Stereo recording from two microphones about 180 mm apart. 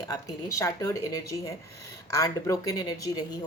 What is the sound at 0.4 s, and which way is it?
Speech, 15° left (ahead or behind).